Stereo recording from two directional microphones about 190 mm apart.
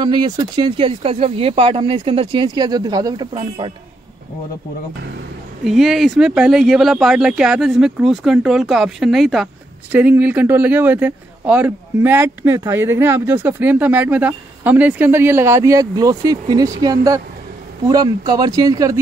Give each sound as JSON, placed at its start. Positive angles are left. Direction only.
{"t": 0.0, "sound": "speech", "side_deg": -25}
{"t": 5.6, "sound": "speech", "side_deg": 0}